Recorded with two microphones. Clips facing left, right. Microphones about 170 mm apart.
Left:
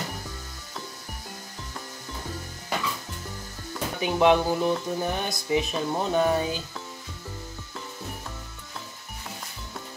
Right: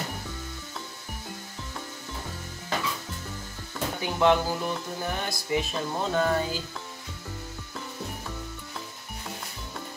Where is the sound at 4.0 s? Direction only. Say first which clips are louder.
Left 3 dB; 20° left (ahead or behind).